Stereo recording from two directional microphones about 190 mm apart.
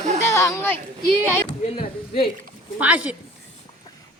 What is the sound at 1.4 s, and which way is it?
Speech, 30° left (ahead or behind).